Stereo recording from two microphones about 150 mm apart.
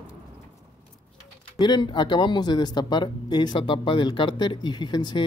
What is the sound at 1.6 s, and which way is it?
Speech, 30° left (ahead or behind).